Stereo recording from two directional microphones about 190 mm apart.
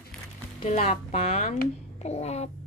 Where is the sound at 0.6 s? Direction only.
35° left (ahead or behind).